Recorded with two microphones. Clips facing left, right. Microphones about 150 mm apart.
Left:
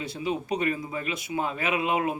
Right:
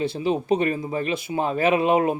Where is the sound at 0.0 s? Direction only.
30° right (ahead or behind).